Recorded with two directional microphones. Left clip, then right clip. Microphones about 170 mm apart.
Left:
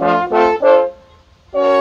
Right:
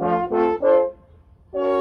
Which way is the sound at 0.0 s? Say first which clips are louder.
Left 7 dB; 15° left (ahead or behind).